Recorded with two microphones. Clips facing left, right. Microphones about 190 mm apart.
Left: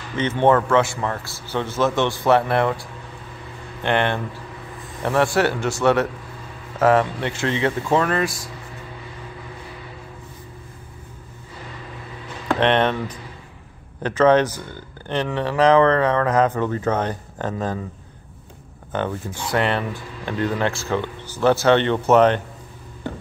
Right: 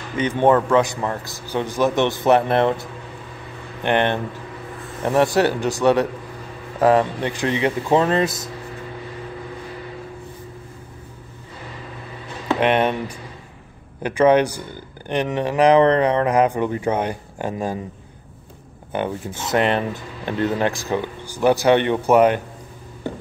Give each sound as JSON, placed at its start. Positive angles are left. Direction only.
{"t": 0.2, "sound": "speech", "side_deg": -15}
{"t": 12.5, "sound": "speech", "side_deg": -10}
{"t": 18.9, "sound": "speech", "side_deg": -15}